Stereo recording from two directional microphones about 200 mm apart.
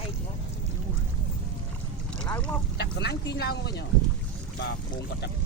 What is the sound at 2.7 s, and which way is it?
Speech, 55° left (ahead or behind).